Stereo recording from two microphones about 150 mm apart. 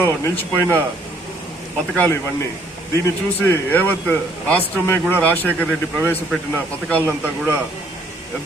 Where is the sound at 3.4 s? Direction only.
15° left (ahead or behind).